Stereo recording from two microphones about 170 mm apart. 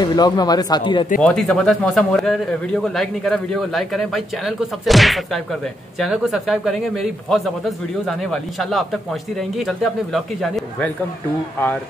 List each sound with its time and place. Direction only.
0.0 s speech: 25° left (ahead or behind)
1.2 s speech: 5° left (ahead or behind)